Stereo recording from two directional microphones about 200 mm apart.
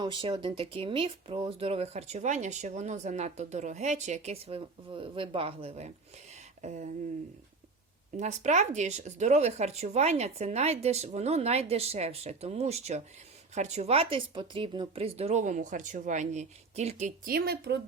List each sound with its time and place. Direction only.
0.0 s speech: 25° right (ahead or behind)
8.1 s speech: 35° right (ahead or behind)
17.2 s speech: 50° right (ahead or behind)